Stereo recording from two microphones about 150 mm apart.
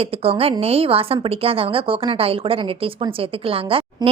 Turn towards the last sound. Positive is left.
turn(degrees=-40)  # may be behind; listen again after turning